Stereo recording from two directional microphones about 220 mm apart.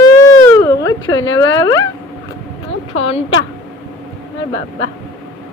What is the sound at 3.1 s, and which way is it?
Speech, 25° left (ahead or behind).